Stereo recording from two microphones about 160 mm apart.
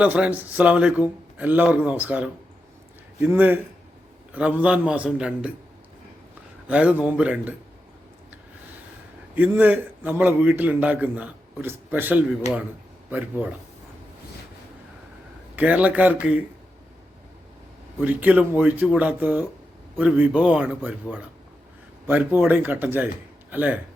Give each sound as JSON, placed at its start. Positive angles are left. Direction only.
{"t": 0.0, "sound": "a man's voice", "side_deg": -10}
{"t": 6.7, "sound": "a man's voice", "side_deg": -10}
{"t": 9.3, "sound": "a man's voice", "side_deg": -10}
{"t": 12.4, "sound": "speech", "side_deg": 45}
{"t": 13.1, "sound": "speech", "side_deg": -10}
{"t": 15.5, "sound": "a man's voice", "side_deg": -10}
{"t": 18.0, "sound": "a man's voice", "side_deg": -10}